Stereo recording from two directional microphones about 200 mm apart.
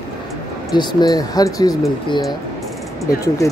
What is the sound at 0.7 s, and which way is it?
Speech, 20° left (ahead or behind).